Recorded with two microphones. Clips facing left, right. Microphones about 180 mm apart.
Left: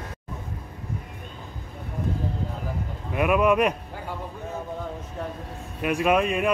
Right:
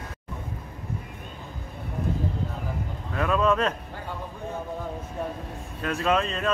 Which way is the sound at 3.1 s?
15° left (ahead or behind).